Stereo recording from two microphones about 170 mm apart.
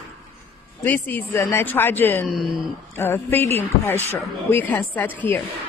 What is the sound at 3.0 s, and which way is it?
A woman's voice, 10° left (ahead or behind).